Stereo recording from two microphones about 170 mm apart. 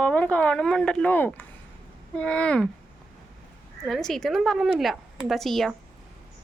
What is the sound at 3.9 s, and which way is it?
A woman's voice, centre (ahead or behind).